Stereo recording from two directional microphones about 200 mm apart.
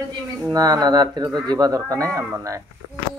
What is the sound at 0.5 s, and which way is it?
Speech, 15° right (ahead or behind).